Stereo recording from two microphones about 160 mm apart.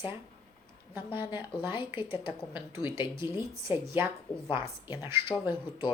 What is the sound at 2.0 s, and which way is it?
Speech, 15° right (ahead or behind).